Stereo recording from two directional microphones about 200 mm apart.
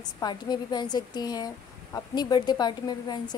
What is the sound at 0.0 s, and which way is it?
A woman's voice, 20° left (ahead or behind).